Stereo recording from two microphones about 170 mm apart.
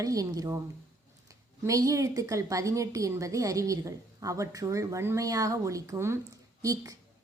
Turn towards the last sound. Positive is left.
turn(degrees=-20)  # may be behind; listen again after turning